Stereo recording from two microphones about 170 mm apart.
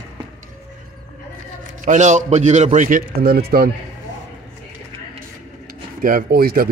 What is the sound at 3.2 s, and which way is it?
Speech, 65° right (ahead or behind).